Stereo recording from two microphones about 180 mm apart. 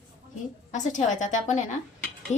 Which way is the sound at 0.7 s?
45° left (ahead or behind).